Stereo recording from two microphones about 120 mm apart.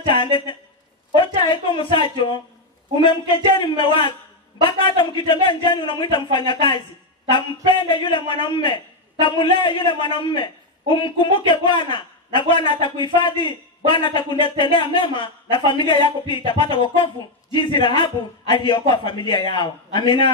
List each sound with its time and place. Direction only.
0.1 s a man's voice: 45° left (ahead or behind)
3.6 s a man's voice: 45° left (ahead or behind)